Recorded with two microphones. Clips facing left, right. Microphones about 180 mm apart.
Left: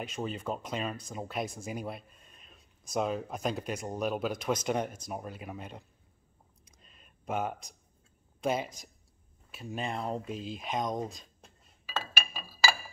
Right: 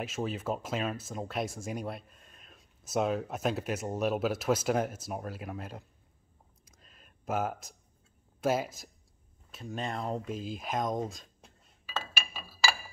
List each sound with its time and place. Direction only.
0.0 s speech: 5° right (ahead or behind)
6.6 s a sound: centre (ahead or behind)
8.4 s speech: 5° right (ahead or behind)